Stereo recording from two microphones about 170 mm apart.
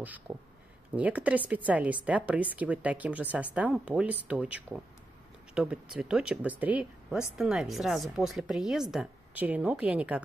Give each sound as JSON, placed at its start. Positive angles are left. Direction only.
{"t": 0.0, "sound": "speech", "side_deg": -10}